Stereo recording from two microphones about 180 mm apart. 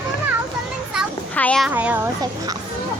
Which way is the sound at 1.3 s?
5° left (ahead or behind).